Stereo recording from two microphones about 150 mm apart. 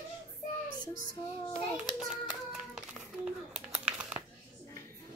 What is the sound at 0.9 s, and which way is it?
Child singing, 70° right (ahead or behind).